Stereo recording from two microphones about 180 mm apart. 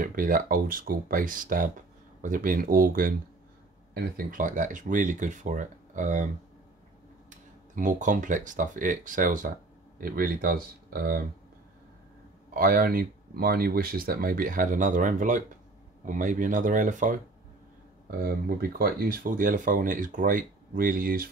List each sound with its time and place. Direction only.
0.0 s speech: 50° right (ahead or behind)
7.2 s speech: 45° right (ahead or behind)
12.5 s speech: 55° right (ahead or behind)
18.0 s speech: 55° right (ahead or behind)